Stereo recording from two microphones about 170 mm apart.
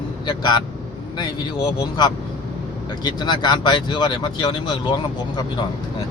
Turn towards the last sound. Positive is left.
turn(degrees=30)  # may be behind; listen again after turning